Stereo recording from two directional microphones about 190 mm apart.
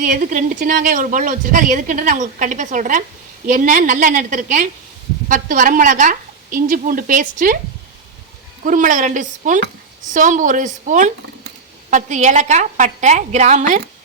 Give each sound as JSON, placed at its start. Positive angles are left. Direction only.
{"t": 0.0, "sound": "speech", "side_deg": -45}
{"t": 8.6, "sound": "a woman's voice", "side_deg": -45}